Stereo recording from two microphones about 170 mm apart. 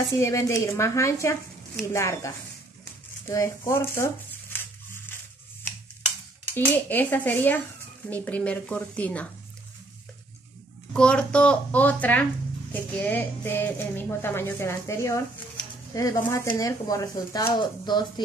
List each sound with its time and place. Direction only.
0.2 s a woman's voice: 15° left (ahead or behind)
6.5 s a woman's voice: 10° left (ahead or behind)
10.9 s a woman's voice: 5° left (ahead or behind); by 18.2 s 25° left (ahead or behind)